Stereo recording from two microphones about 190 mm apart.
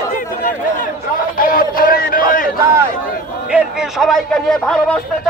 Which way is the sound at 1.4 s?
50° left (ahead or behind).